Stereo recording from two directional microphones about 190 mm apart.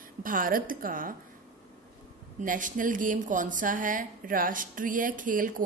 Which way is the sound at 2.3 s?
45° right (ahead or behind).